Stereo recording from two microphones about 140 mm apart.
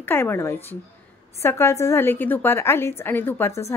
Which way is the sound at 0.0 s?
15° left (ahead or behind).